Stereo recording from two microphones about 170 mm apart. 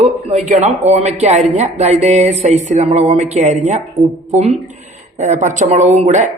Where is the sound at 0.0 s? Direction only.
40° right (ahead or behind).